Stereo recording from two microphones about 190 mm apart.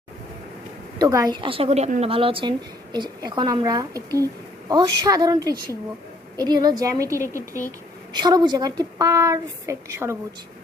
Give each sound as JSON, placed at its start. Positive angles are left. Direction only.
{"t": 0.9, "sound": "a woman's voice", "side_deg": -15}